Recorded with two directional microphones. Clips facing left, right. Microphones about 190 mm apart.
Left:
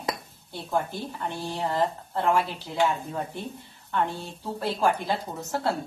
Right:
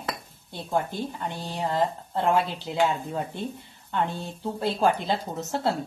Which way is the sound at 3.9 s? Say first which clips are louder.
Even; 20° right (ahead or behind).